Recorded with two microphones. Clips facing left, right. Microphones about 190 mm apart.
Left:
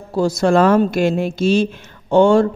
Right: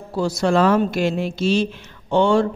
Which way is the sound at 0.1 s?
45° left (ahead or behind).